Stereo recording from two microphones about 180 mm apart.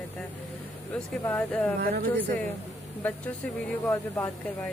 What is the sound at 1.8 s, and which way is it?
Speech, 60° right (ahead or behind).